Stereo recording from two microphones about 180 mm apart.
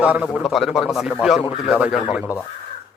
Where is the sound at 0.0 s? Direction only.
5° right (ahead or behind).